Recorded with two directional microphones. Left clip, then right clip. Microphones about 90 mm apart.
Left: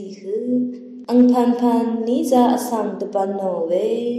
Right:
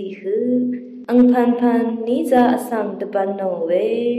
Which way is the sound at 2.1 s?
15° left (ahead or behind).